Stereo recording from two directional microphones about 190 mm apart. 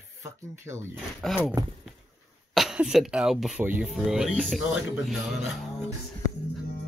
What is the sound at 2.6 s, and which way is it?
Speech, 5° right (ahead or behind).